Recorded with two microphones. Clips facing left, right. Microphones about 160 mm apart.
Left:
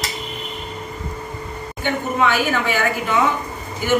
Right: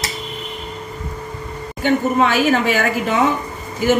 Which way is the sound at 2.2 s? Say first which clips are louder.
Right 4 dB; 40° right (ahead or behind).